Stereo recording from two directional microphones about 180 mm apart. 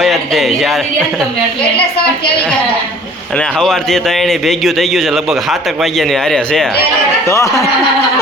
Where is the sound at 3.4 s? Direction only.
5° left (ahead or behind).